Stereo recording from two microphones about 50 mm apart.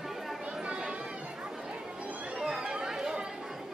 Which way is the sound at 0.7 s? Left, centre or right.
Centre.